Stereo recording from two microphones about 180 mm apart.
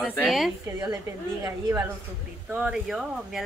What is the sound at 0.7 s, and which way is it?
Speech, 20° right (ahead or behind).